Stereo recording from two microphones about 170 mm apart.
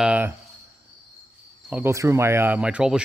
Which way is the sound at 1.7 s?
15° right (ahead or behind).